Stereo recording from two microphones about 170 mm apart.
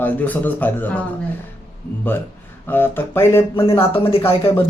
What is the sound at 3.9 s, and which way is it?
Speech, 35° left (ahead or behind).